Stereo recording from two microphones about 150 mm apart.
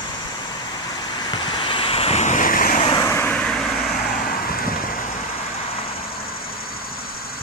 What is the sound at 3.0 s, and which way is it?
Vehicle, 15° left (ahead or behind).